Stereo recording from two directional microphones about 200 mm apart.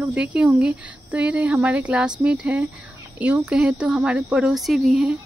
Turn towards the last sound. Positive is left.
turn(degrees=0)  # may be behind; listen again after turning